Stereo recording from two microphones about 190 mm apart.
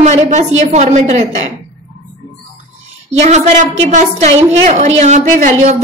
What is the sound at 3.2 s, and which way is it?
A woman's voice, 35° right (ahead or behind).